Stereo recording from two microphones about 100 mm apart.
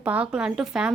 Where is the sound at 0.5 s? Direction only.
5° right (ahead or behind).